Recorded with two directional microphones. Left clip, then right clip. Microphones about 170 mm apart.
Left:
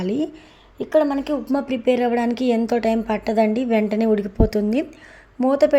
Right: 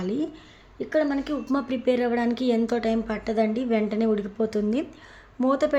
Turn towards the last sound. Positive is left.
turn(degrees=20)  # may be behind; listen again after turning